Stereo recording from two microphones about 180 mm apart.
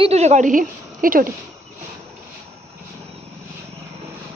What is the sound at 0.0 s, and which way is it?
A woman's voice, 35° right (ahead or behind).